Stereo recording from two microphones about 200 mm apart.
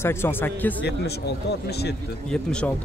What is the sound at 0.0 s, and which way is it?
Speech, 10° left (ahead or behind).